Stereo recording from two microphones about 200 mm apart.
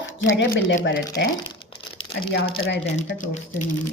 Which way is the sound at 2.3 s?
55° left (ahead or behind).